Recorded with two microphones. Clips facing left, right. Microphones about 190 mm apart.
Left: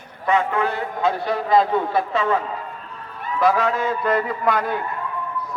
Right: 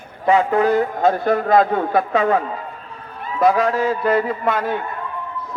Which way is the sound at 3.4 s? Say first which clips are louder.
Right 3 dB; 40° right (ahead or behind).